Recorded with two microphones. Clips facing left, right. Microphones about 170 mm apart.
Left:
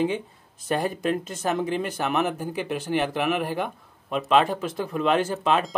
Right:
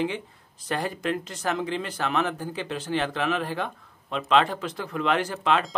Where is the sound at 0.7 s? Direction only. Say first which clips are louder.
Left 3 dB; 20° left (ahead or behind).